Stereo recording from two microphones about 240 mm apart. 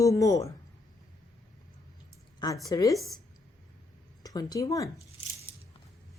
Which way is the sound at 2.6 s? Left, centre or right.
Centre.